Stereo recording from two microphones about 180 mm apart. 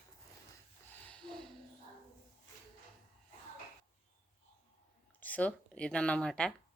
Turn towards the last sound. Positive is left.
turn(degrees=5)  # may be behind; listen again after turning